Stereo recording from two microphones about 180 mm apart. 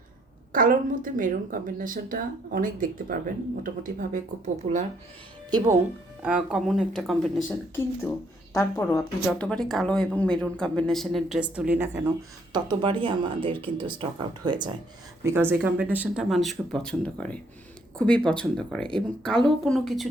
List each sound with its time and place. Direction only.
0.5 s a woman's voice: 50° right (ahead or behind)
5.5 s speech: 20° right (ahead or behind)
6.2 s speech: 5° right (ahead or behind)
8.5 s speech: 15° left (ahead or behind)
9.5 s speech: 5° left (ahead or behind); by 12.1 s 15° right (ahead or behind)
12.5 s speech: 25° right (ahead or behind)
15.2 s speech: 15° right (ahead or behind)